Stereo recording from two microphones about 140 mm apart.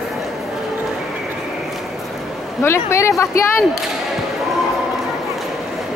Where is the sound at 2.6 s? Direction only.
20° left (ahead or behind).